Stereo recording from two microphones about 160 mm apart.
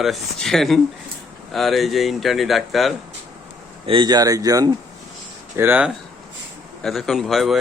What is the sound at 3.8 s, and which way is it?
Speech, 30° right (ahead or behind).